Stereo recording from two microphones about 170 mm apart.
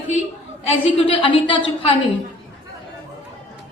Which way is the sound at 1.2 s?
30° left (ahead or behind).